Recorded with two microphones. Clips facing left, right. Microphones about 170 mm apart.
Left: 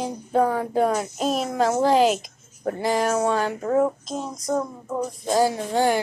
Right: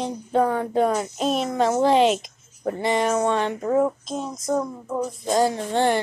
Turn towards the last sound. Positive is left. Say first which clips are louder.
# even
turn(degrees=5)  # may be behind; listen again after turning